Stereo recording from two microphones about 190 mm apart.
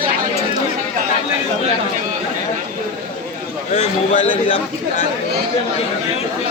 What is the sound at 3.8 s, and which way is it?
Speech, 40° left (ahead or behind).